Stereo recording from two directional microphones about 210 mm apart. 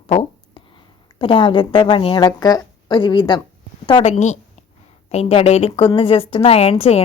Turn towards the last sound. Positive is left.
turn(degrees=30)  # may be behind; listen again after turning